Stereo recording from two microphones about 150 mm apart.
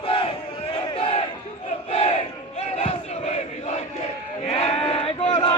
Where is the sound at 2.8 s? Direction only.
45° left (ahead or behind).